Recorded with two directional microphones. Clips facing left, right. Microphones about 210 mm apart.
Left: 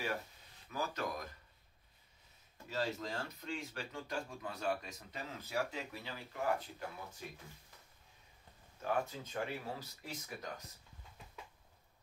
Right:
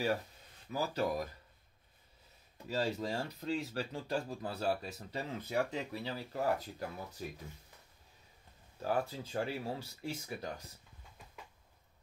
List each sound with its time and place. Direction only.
0.7 s speech: 35° right (ahead or behind)
3.0 s speech: 35° right (ahead or behind)
8.8 s speech: 35° right (ahead or behind)